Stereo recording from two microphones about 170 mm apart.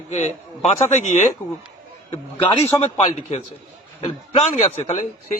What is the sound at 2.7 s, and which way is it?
Speech, 25° left (ahead or behind).